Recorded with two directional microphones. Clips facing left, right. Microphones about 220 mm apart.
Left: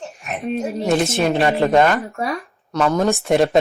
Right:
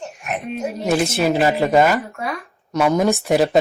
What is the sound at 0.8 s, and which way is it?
A woman's voice, centre (ahead or behind).